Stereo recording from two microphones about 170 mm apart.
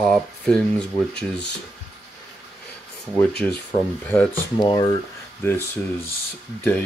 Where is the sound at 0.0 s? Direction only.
5° left (ahead or behind).